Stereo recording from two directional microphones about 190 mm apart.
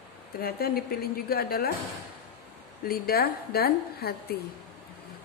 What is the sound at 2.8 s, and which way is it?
A woman's voice, 55° left (ahead or behind).